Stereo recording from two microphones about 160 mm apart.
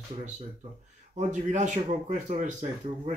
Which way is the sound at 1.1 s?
50° right (ahead or behind).